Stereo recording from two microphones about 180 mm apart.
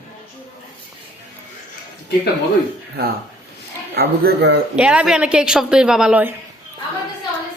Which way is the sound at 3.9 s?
65° right (ahead or behind).